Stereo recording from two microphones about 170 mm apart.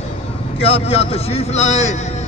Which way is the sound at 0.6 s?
35° left (ahead or behind).